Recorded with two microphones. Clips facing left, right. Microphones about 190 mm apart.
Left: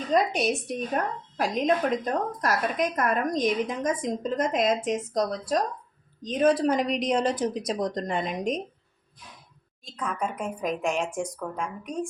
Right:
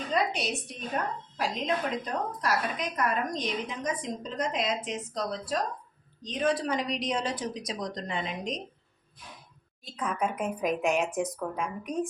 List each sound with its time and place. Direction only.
0.1 s a woman's voice: 45° left (ahead or behind)
9.9 s a woman's voice: centre (ahead or behind)